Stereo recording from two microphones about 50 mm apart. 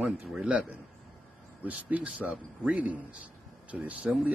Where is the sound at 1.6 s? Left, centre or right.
Right.